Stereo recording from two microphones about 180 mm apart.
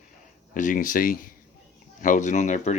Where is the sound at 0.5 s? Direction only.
45° left (ahead or behind).